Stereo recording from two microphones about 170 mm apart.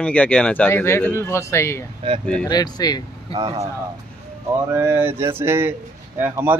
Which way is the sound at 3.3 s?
35° right (ahead or behind).